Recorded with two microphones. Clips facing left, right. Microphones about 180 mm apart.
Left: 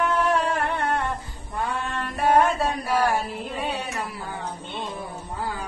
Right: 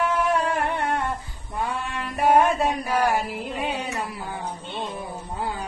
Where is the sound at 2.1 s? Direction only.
15° right (ahead or behind).